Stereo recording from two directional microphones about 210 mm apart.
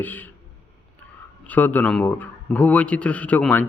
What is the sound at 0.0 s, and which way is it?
Speech, 10° left (ahead or behind).